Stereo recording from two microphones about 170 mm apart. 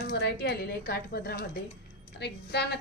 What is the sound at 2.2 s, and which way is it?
Speech, 80° left.